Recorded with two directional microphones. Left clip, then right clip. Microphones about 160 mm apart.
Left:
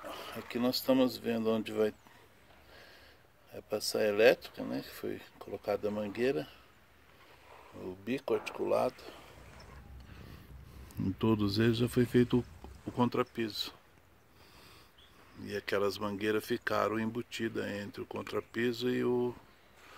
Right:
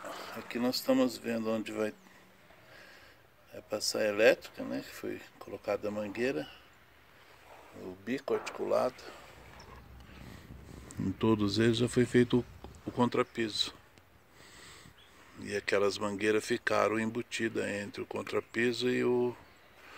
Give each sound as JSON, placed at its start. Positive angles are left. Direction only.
{"t": 0.1, "sound": "speech", "side_deg": 20}
{"t": 3.5, "sound": "speech", "side_deg": 30}
{"t": 7.8, "sound": "speech", "side_deg": 25}
{"t": 10.9, "sound": "speech", "side_deg": 5}
{"t": 15.3, "sound": "speech", "side_deg": 5}